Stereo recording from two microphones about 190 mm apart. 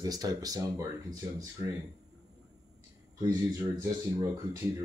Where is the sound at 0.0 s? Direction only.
20° right (ahead or behind).